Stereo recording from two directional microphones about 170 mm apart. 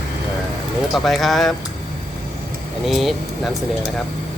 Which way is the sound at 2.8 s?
Centre (ahead or behind).